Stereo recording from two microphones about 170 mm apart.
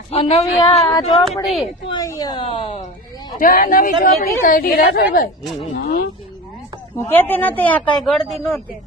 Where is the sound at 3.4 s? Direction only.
55° left (ahead or behind).